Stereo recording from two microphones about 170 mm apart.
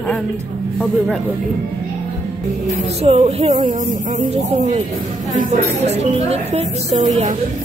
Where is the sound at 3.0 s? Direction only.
40° right (ahead or behind).